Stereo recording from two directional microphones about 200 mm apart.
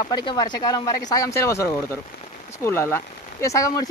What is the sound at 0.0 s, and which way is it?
Speech, 20° left (ahead or behind).